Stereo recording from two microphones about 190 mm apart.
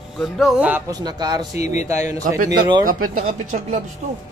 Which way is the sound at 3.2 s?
45° right (ahead or behind).